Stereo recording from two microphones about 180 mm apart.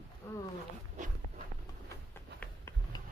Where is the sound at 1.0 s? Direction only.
45° right (ahead or behind).